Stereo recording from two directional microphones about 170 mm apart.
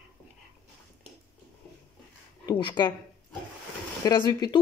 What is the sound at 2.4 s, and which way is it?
Speech, 25° left (ahead or behind).